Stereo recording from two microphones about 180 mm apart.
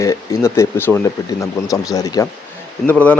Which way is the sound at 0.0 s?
15° left (ahead or behind).